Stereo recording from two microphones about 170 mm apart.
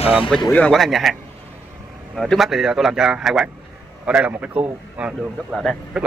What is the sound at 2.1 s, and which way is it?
A man's voice, centre (ahead or behind).